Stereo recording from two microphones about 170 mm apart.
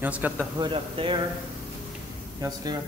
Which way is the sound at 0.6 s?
30° right (ahead or behind).